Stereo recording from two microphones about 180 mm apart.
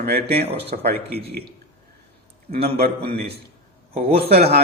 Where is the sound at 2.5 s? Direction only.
60° right (ahead or behind).